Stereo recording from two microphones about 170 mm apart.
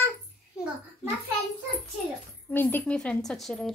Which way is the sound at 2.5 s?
10° left (ahead or behind).